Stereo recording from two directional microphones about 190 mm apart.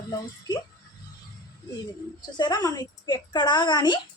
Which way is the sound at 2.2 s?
20° left (ahead or behind).